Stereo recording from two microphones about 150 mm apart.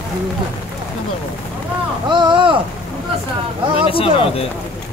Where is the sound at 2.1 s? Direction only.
30° right (ahead or behind).